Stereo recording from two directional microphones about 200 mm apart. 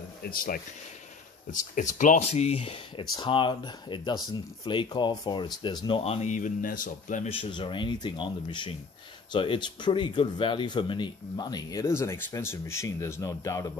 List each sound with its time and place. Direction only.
0.2 s speech: 45° left (ahead or behind); by 13.7 s 15° left (ahead or behind)